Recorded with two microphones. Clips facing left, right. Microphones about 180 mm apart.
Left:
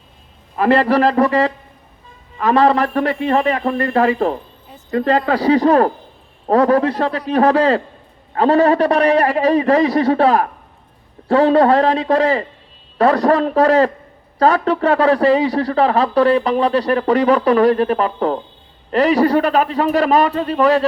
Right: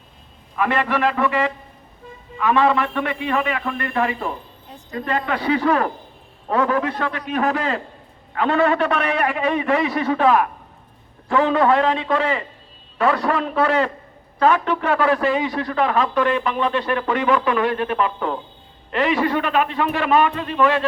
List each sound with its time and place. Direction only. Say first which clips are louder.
0.5 s a man's voice: left 7 dB; 35° left (ahead or behind)